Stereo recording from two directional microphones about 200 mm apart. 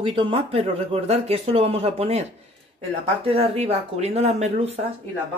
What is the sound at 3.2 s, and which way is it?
Speech, 30° right (ahead or behind).